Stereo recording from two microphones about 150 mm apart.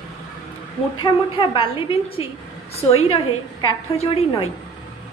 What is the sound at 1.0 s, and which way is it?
A woman's voice, 35° left (ahead or behind).